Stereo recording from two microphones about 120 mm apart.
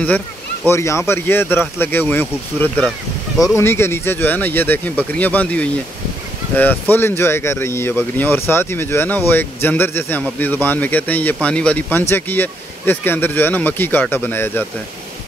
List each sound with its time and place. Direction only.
0.7 s speech: 25° left (ahead or behind)